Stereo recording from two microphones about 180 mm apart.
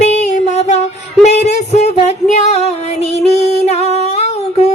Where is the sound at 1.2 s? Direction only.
40° left (ahead or behind).